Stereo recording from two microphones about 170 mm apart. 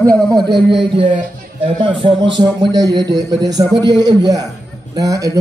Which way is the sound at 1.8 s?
30° right (ahead or behind).